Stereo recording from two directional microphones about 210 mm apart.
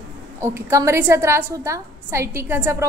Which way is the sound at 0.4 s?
15° right (ahead or behind).